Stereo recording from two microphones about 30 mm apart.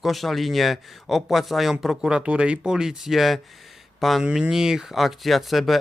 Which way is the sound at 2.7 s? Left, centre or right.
Right.